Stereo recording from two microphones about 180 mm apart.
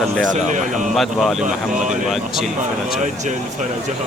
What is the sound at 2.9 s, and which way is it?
Speech, 40° right (ahead or behind).